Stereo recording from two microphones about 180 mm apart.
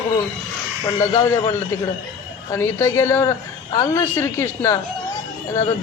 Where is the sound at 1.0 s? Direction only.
15° left (ahead or behind).